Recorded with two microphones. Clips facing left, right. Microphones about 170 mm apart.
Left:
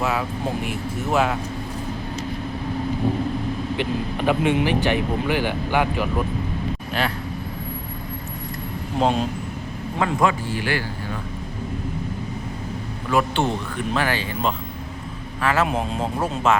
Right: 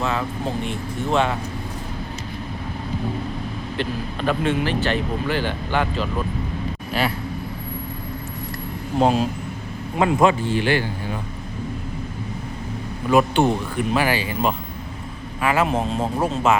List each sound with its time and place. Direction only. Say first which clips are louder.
0.0 s vehicle: even; 5° left (ahead or behind)
0.7 s speech: right 1 dB; 5° left (ahead or behind)
3.8 s speech: right 2 dB; 15° left (ahead or behind)
9.0 s speech: right 2 dB; 5° right (ahead or behind)
10.0 s speech: right 4 dB; 25° right (ahead or behind)
13.1 s a man's voice: right 4 dB; 15° right (ahead or behind)
15.6 s speech: right 2 dB; centre (ahead or behind)